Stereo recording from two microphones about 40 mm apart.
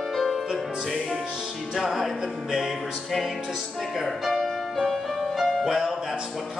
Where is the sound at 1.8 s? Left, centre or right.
Centre.